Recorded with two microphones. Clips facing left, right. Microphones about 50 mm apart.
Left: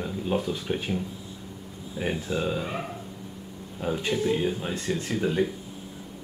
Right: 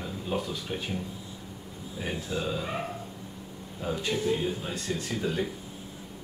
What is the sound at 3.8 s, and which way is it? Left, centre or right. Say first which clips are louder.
Speech: left 3 dB; centre.